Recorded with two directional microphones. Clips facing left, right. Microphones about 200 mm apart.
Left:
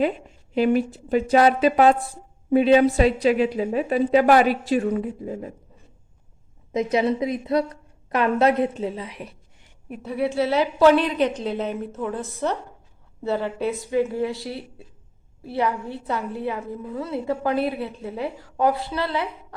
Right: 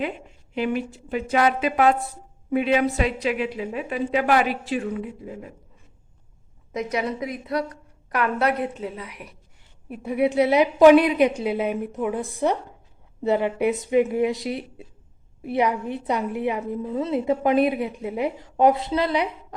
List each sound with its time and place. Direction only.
0.5 s a woman's voice: 40° left (ahead or behind)
6.7 s a woman's voice: 25° left (ahead or behind)
10.0 s a woman's voice: 15° right (ahead or behind)